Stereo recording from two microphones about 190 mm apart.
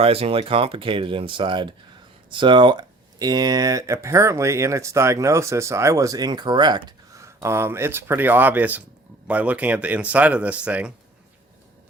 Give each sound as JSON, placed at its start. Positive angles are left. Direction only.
{"t": 0.0, "sound": "speech", "side_deg": -30}